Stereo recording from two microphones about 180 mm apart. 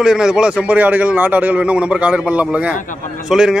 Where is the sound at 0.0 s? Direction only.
5° right (ahead or behind).